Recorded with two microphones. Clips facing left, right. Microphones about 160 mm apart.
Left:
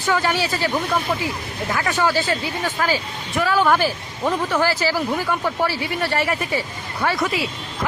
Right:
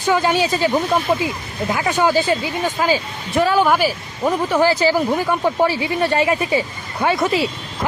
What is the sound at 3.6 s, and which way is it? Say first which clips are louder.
Speech: right 1 dB; 10° right (ahead or behind).